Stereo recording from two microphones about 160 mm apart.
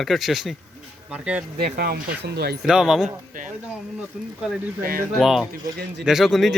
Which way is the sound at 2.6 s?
5° right (ahead or behind).